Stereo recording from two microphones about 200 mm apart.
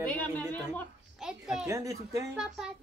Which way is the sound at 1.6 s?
15° right (ahead or behind).